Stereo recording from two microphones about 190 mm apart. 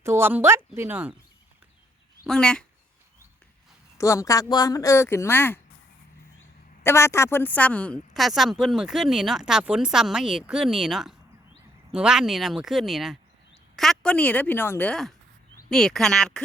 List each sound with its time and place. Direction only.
0.0 s speech: 15° right (ahead or behind)
2.2 s a woman's voice: 5° left (ahead or behind)
3.9 s speech: 15° left (ahead or behind)
6.8 s a woman's voice: 15° left (ahead or behind)